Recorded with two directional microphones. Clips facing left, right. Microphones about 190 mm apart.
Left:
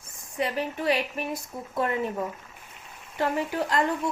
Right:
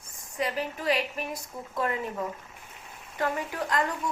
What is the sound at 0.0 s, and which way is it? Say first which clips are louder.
A woman's voice: left 2 dB; 25° left (ahead or behind).